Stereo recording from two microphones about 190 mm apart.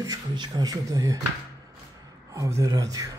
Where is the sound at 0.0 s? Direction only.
20° right (ahead or behind).